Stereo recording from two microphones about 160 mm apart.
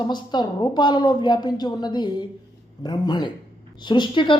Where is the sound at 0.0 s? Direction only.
25° left (ahead or behind).